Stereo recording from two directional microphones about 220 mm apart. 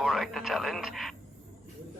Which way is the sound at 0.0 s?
Centre (ahead or behind).